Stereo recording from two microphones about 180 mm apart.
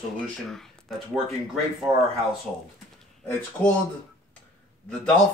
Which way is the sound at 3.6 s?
10° left (ahead or behind).